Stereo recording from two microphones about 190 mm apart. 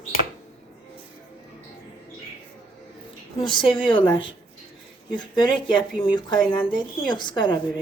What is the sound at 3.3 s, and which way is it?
Speech, 25° left (ahead or behind).